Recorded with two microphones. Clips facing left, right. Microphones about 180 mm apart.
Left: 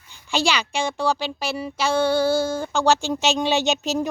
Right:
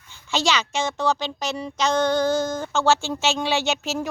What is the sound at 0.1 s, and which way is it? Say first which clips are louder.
A child's voice: even; 15° left (ahead or behind).